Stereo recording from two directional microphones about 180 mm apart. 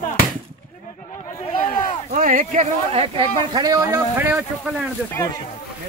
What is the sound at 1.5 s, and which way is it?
Speech, 30° left (ahead or behind).